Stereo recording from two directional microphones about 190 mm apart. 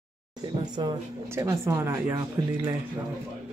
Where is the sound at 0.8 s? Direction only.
25° right (ahead or behind).